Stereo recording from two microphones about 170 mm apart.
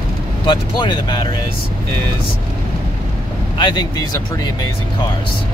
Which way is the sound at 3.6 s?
25° left (ahead or behind).